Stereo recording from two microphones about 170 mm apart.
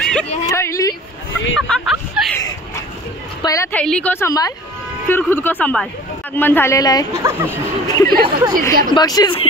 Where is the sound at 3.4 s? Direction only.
20° left (ahead or behind).